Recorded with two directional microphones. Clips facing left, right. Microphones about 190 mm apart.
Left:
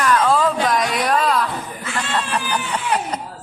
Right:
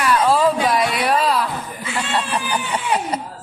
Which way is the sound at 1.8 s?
10° right (ahead or behind).